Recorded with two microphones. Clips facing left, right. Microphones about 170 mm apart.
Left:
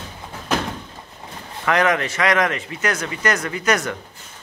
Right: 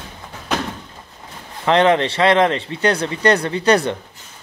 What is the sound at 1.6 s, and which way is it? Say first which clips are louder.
Speech: right 5 dB; 30° right (ahead or behind).